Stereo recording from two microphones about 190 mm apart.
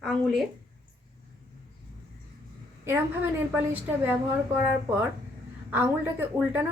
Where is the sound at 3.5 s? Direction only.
10° right (ahead or behind).